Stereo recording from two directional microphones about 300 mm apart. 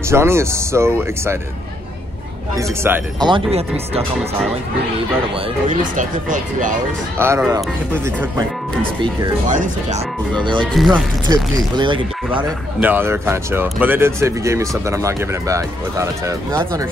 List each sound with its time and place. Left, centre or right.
0.1 s speech: centre
2.5 s speech: centre
5.7 s speech: right
7.2 s speech: centre
9.0 s speech: right
10.7 s speech: centre
11.2 s speech: centre